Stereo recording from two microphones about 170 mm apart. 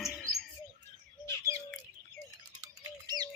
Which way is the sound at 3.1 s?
20° left (ahead or behind).